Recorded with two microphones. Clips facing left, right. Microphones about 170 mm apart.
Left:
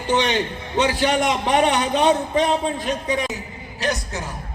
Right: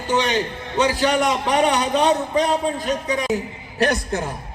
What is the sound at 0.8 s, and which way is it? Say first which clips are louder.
A man's voice: right 1 dB; 40° right (ahead or behind).